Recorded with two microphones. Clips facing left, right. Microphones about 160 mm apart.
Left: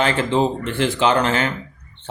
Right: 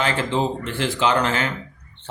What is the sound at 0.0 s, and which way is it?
A man's voice, 20° left (ahead or behind).